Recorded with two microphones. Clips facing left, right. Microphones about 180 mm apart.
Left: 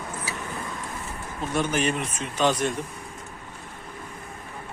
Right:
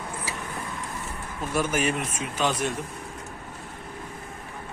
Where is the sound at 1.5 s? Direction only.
5° right (ahead or behind).